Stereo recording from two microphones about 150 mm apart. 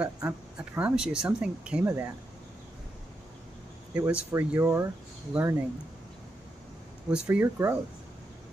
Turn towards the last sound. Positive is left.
turn(degrees=-15)  # may be behind; listen again after turning